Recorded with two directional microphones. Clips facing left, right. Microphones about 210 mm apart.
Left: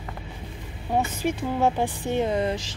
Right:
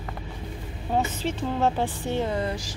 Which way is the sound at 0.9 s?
10° left (ahead or behind).